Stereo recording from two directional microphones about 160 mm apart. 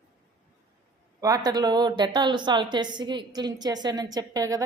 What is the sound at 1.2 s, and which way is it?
Speech, 25° right (ahead or behind).